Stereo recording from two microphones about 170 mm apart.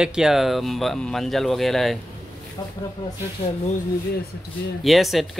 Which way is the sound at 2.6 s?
20° left (ahead or behind).